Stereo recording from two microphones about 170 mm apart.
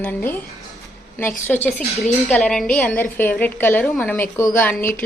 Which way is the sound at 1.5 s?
5° left (ahead or behind).